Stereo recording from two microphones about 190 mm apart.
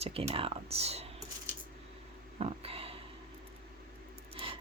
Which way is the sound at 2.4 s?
30° right (ahead or behind).